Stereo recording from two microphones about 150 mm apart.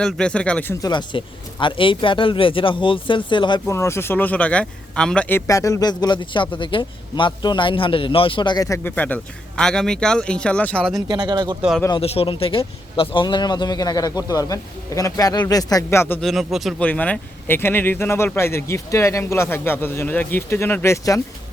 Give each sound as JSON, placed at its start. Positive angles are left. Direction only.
{"t": 0.0, "sound": "speech", "side_deg": 5}
{"t": 0.8, "sound": "a man's voice", "side_deg": 30}
{"t": 3.7, "sound": "speech", "side_deg": 20}
{"t": 5.5, "sound": "a man's voice", "side_deg": 20}
{"t": 9.0, "sound": "speech", "side_deg": 10}
{"t": 11.1, "sound": "speech", "side_deg": -30}
{"t": 11.9, "sound": "a man's voice", "side_deg": 40}
{"t": 16.2, "sound": "speech", "side_deg": 0}
{"t": 16.8, "sound": "speech", "side_deg": 10}